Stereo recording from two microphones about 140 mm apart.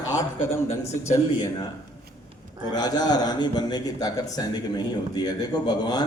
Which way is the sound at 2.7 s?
30° left (ahead or behind).